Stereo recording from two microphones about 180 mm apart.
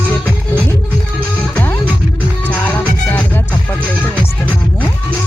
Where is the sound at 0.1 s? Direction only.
10° left (ahead or behind).